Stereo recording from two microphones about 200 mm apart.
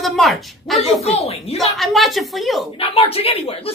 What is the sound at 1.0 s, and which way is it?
Speech, 30° left (ahead or behind).